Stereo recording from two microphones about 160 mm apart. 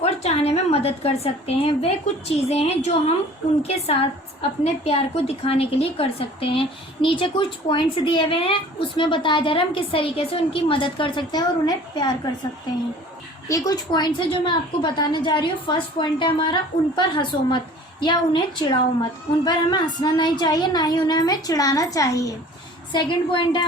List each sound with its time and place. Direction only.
0.0 s a woman's voice: 40° left (ahead or behind)
13.5 s a woman's voice: 25° left (ahead or behind)